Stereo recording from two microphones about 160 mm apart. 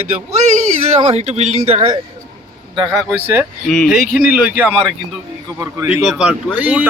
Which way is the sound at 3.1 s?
10° right (ahead or behind).